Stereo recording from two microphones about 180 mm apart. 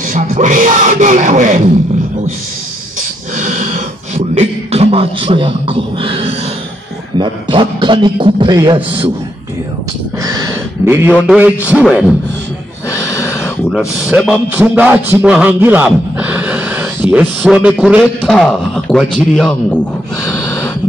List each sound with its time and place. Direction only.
0.1 s speech: 45° right (ahead or behind)
3.0 s beatboxing: 45° right (ahead or behind); by 6.3 s 30° right (ahead or behind)
7.2 s a man's voice: 25° right (ahead or behind)
10.8 s a man's voice: 15° right (ahead or behind)
12.9 s snort: 15° left (ahead or behind)
13.7 s a man's voice: centre (ahead or behind)